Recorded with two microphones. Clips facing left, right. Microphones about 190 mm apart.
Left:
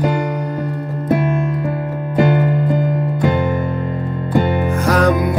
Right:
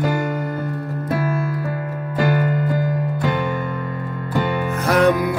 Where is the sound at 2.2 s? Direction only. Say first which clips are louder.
Left 4 dB; 20° left (ahead or behind).